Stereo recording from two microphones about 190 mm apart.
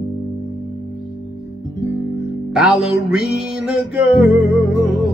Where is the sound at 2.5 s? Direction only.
Centre (ahead or behind).